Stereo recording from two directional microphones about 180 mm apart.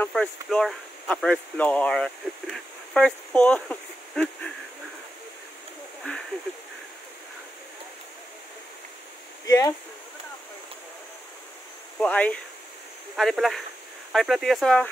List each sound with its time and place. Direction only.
0.0 s speech: 5° left (ahead or behind)
9.5 s speech: 15° left (ahead or behind)
12.0 s speech: 10° left (ahead or behind)